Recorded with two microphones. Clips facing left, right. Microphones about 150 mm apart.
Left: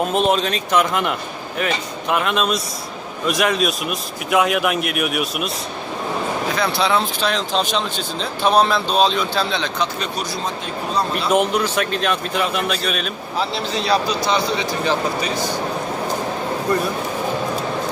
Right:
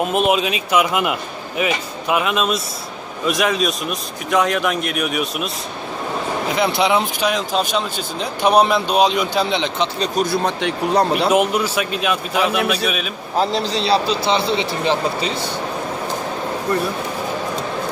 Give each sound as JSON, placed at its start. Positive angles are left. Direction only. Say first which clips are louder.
{"t": 0.0, "sound": "a man's voice", "louder": "right 1 dB", "side_deg": -5}
{"t": 6.5, "sound": "speech", "louder": "right 3 dB", "side_deg": -20}
{"t": 9.9, "sound": "speech", "louder": "right 6 dB", "side_deg": -35}
{"t": 10.2, "sound": "speech", "louder": "right 6 dB", "side_deg": -60}
{"t": 11.3, "sound": "a man's voice", "louder": "right 1 dB", "side_deg": -5}
{"t": 13.4, "sound": "speech", "louder": "right 4 dB", "side_deg": -40}